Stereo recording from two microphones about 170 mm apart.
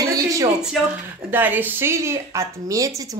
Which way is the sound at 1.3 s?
10° right (ahead or behind).